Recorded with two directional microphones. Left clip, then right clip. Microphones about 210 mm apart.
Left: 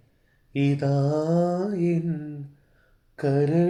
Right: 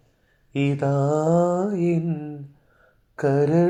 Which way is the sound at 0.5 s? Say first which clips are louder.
Right 2 dB; 5° right (ahead or behind).